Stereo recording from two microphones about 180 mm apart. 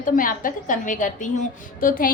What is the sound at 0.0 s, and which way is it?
A woman's voice, 50° left (ahead or behind).